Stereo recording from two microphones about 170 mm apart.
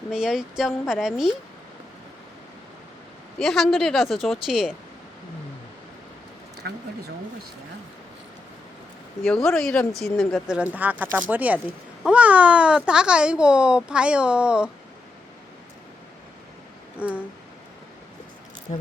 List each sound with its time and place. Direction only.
0.1 s speech: 5° right (ahead or behind)
3.3 s speech: centre (ahead or behind)
6.6 s speech: 80° right
9.2 s speech: 5° left (ahead or behind)
17.0 s speech: 10° right (ahead or behind)
18.7 s speech: 35° left (ahead or behind)